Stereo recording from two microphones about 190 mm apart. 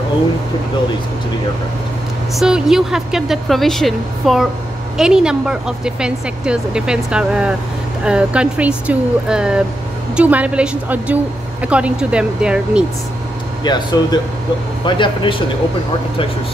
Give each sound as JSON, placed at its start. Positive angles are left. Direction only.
{"t": 2.3, "sound": "a woman's voice", "side_deg": -5}
{"t": 13.7, "sound": "speech", "side_deg": 20}